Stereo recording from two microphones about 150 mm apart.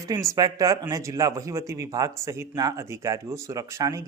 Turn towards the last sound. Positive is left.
turn(degrees=-20)  # may be behind; listen again after turning